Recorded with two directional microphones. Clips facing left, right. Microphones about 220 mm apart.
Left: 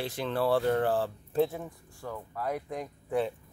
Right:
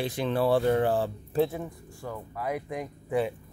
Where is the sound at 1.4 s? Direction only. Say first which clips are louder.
Right 1 dB; 5° right (ahead or behind).